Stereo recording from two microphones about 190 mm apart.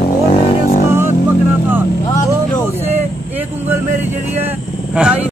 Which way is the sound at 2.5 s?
10° left (ahead or behind).